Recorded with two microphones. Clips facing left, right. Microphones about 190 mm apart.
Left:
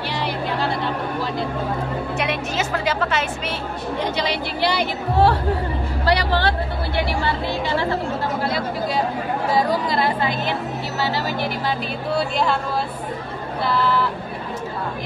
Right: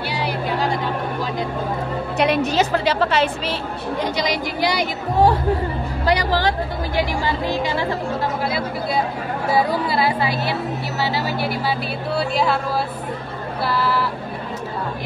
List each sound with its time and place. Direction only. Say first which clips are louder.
0.1 s a sound: right 1 dB; 10° right (ahead or behind)
2.1 s a woman's voice: right 9 dB; 35° right (ahead or behind)
4.0 s a woman's voice: right 1 dB; 15° right (ahead or behind)
9.5 s a woman's voice: right 2 dB; 10° right (ahead or behind)
13.7 s speech: left 1 dB; 5° right (ahead or behind)